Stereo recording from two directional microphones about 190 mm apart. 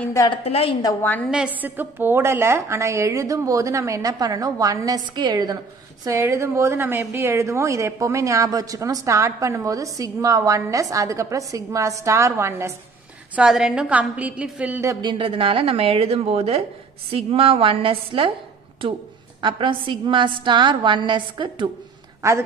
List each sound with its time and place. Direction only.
0.1 s a woman's voice: 20° left (ahead or behind)
0.4 s a woman's voice: 30° left (ahead or behind)
1.6 s a woman's voice: 10° right (ahead or behind)
13.4 s a woman's voice: 5° right (ahead or behind); by 18.3 s 30° right (ahead or behind)
19.4 s a woman's voice: 25° right (ahead or behind)